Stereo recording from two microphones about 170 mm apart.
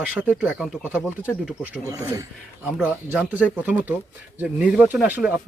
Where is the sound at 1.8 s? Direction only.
20° right (ahead or behind).